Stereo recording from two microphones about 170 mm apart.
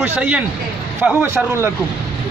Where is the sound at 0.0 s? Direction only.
10° right (ahead or behind).